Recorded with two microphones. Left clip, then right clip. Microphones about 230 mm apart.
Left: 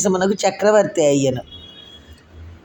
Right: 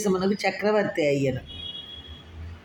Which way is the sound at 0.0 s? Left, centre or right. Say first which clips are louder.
Left 7 dB; left.